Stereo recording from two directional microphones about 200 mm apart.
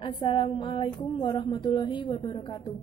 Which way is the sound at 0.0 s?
25° left (ahead or behind).